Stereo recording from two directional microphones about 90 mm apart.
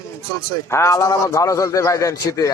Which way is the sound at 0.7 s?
35° left (ahead or behind).